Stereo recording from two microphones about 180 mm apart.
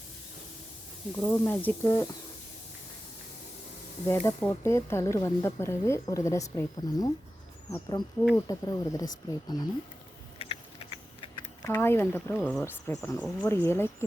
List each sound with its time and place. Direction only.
1.2 s speech: 10° left (ahead or behind)
4.0 s speech: 15° left (ahead or behind)
10.3 s a sound: 35° left (ahead or behind)
11.6 s speech: 15° left (ahead or behind)